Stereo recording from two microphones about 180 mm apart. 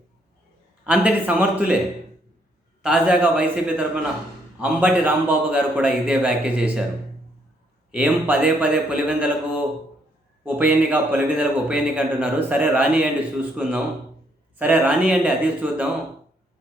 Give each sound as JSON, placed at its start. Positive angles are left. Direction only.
{"t": 0.9, "sound": "a man's voice", "side_deg": -5}
{"t": 2.8, "sound": "a man's voice", "side_deg": -5}
{"t": 7.9, "sound": "a man's voice", "side_deg": -10}